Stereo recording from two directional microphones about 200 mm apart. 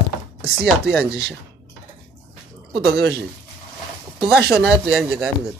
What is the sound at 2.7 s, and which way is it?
Speech, 55° right (ahead or behind).